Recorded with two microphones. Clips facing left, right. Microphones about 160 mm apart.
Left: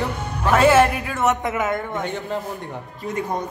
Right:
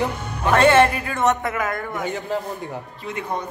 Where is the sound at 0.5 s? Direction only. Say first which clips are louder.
Even; 5° left (ahead or behind).